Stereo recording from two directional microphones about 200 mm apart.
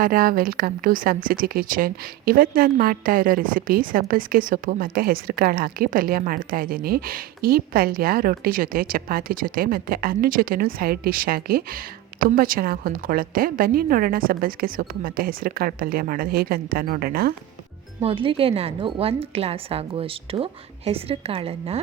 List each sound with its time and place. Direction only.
0.0 s a woman's voice: 45° right (ahead or behind)
18.0 s a woman's voice: 25° right (ahead or behind)